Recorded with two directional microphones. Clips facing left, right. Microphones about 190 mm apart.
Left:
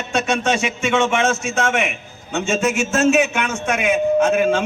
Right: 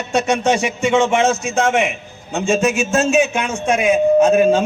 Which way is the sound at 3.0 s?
30° right (ahead or behind).